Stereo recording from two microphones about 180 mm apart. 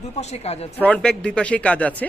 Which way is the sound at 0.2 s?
35° left (ahead or behind).